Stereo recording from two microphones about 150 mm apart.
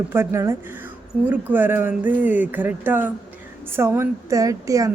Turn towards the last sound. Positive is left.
turn(degrees=-20)  # may be behind; listen again after turning